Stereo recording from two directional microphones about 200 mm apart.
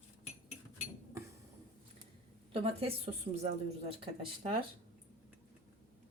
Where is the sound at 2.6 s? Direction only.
30° right (ahead or behind).